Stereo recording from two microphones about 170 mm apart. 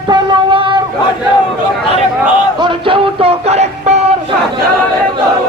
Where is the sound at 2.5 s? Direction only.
30° right (ahead or behind).